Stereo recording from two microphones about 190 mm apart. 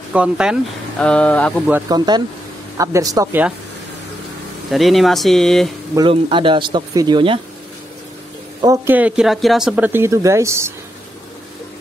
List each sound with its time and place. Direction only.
0.1 s speech: 5° right (ahead or behind)
0.9 s speech: 5° left (ahead or behind)
1.9 s speech: 20° right (ahead or behind)
4.6 s speech: centre (ahead or behind)
5.9 s speech: 25° right (ahead or behind)
8.8 s speech: 10° right (ahead or behind)